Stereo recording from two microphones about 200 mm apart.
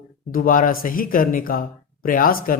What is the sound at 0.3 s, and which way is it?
A man's voice, 45° left (ahead or behind).